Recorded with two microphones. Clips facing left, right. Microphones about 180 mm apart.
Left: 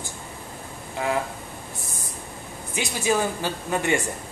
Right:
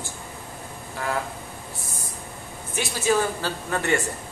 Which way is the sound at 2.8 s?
15° left (ahead or behind).